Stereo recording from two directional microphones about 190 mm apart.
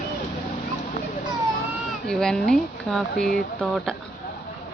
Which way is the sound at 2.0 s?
5° left (ahead or behind).